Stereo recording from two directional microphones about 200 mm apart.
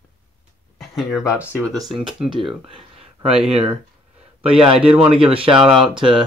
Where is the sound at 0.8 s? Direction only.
Centre (ahead or behind).